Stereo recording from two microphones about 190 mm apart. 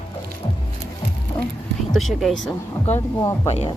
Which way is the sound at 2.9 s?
15° left (ahead or behind).